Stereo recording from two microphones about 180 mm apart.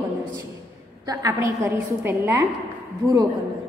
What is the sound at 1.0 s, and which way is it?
A woman's voice, 20° right (ahead or behind).